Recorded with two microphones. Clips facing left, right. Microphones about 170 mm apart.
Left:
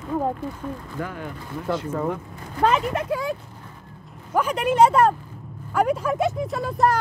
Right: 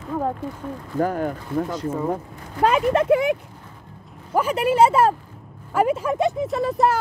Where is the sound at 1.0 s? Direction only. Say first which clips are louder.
Right 12 dB; 45° right (ahead or behind).